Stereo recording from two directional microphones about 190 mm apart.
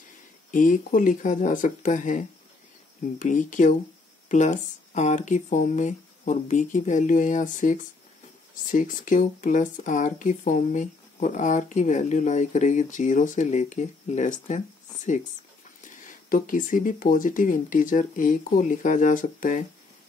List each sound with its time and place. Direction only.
0.5 s speech: 45° left (ahead or behind)
15.8 s speech: 45° left (ahead or behind)